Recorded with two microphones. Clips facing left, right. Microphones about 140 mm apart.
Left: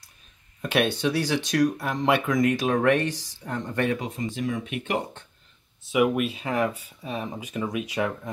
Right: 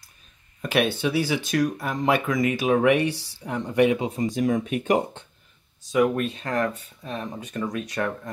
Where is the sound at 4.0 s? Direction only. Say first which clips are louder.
Right 5 dB; 35° right (ahead or behind).